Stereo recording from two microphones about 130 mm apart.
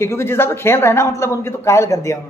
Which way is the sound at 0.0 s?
20° left (ahead or behind).